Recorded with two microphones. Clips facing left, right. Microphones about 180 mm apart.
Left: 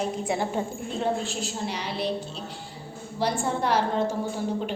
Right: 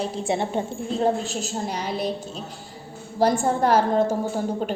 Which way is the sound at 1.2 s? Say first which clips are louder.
Right 3 dB; 45° right (ahead or behind).